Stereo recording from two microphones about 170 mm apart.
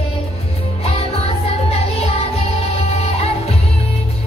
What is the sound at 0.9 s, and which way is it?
Music, 35° left (ahead or behind).